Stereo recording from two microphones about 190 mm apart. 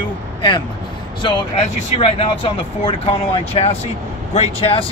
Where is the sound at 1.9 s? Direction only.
30° left (ahead or behind).